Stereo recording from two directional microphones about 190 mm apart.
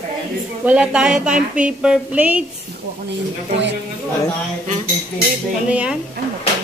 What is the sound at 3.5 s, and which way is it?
Speech, 65° right (ahead or behind).